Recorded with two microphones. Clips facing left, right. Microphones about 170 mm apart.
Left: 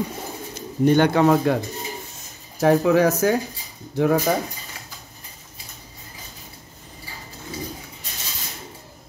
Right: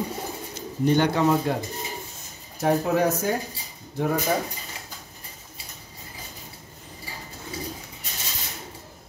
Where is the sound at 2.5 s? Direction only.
90° left.